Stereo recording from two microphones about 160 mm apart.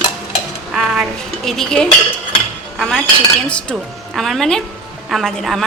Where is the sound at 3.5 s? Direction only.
5° left (ahead or behind).